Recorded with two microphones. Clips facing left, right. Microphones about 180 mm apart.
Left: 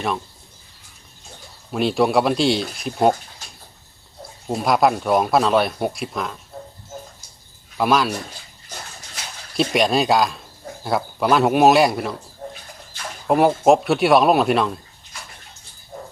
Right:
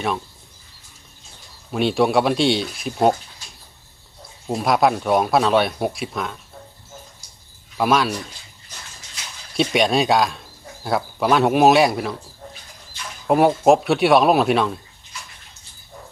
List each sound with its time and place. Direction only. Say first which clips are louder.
1.7 s speech: even; centre (ahead or behind)
4.4 s speech: even; centre (ahead or behind)
7.8 s speech: even; centre (ahead or behind)
9.6 s speech: even; centre (ahead or behind)
12.4 s bird: left 6 dB; 40° left (ahead or behind)
13.2 s speech: even; centre (ahead or behind)